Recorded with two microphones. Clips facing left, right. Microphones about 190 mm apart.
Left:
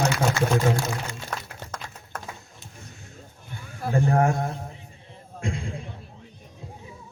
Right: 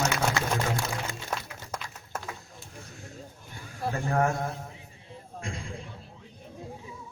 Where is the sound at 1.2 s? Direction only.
60° left (ahead or behind).